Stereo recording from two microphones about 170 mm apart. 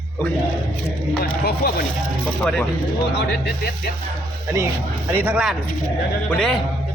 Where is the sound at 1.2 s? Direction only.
65° left (ahead or behind).